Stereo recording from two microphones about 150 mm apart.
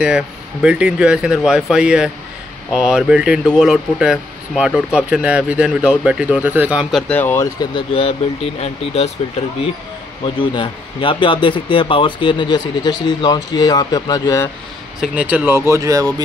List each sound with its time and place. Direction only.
0.0 s speech: 5° right (ahead or behind)
7.2 s speech: 15° left (ahead or behind)
7.7 s speech: 35° left (ahead or behind)
10.2 s speech: 35° left (ahead or behind)
15.0 s speech: 10° right (ahead or behind)
15.7 s speech: 20° right (ahead or behind)